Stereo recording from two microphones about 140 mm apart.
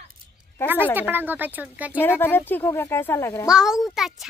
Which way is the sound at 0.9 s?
15° right (ahead or behind).